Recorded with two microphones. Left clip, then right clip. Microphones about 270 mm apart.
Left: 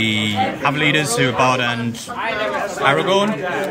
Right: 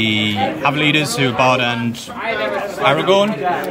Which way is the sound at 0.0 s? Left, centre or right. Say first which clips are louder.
Right 1 dB; centre.